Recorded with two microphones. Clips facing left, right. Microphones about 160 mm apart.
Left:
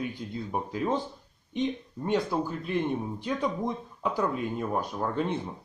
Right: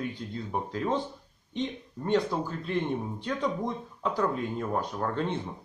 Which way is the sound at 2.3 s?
10° left (ahead or behind).